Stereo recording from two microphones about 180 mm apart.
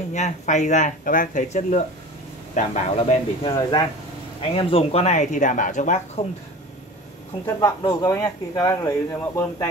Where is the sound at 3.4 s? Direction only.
30° left (ahead or behind); by 6.2 s 45° left (ahead or behind).